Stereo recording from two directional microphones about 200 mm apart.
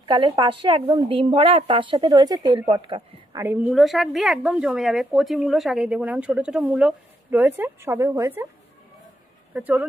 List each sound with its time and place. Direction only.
0.0 s a woman's voice: 25° right (ahead or behind)
3.4 s speech: 5° right (ahead or behind)
9.5 s speech: 10° right (ahead or behind)